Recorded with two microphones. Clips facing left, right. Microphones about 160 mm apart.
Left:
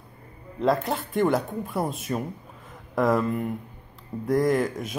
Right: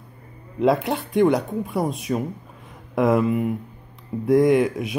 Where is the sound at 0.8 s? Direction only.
Centre (ahead or behind).